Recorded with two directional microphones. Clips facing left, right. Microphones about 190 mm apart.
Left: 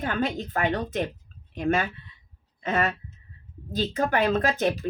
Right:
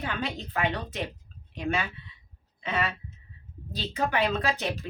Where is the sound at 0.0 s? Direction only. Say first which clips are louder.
Left 6 dB; 45° left (ahead or behind).